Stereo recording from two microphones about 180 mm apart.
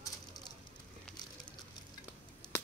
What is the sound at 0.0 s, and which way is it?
Fire, 20° left (ahead or behind).